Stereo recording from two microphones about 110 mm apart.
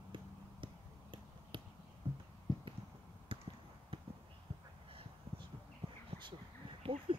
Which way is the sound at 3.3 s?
50° right (ahead or behind).